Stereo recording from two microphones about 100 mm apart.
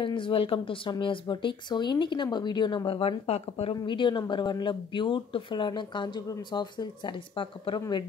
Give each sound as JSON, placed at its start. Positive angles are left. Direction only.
{"t": 0.0, "sound": "speech", "side_deg": 55}
{"t": 3.8, "sound": "speech", "side_deg": 50}